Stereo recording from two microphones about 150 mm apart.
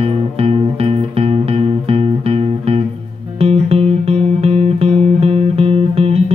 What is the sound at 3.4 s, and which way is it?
Music, 45° right (ahead or behind).